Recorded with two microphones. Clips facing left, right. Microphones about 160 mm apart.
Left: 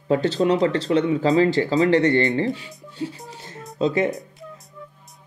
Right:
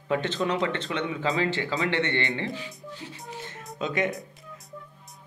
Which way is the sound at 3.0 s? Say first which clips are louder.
Left 12 dB; 35° left (ahead or behind).